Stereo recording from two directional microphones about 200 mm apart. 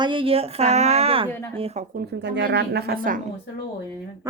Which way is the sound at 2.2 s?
60° right (ahead or behind).